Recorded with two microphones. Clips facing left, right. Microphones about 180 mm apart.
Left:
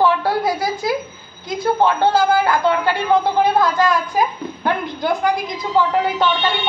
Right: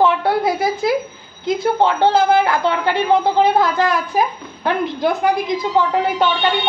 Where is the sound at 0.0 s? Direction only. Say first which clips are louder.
Right 1 dB; 25° right (ahead or behind).